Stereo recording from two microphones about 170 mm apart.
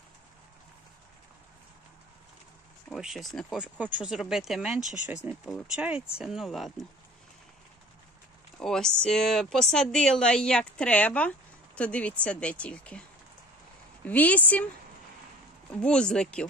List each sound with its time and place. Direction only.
2.9 s speech: centre (ahead or behind)
8.5 s speech: 5° left (ahead or behind)
14.0 s a woman's voice: 10° left (ahead or behind)
15.7 s speech: 5° left (ahead or behind)